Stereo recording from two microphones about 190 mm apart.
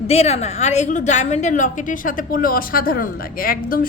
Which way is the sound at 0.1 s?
35° left (ahead or behind).